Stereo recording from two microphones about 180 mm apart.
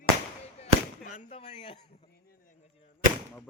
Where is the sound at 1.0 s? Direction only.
45° left (ahead or behind).